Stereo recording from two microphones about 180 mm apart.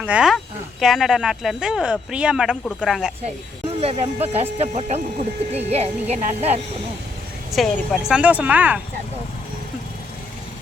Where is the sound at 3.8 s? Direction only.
35° right (ahead or behind).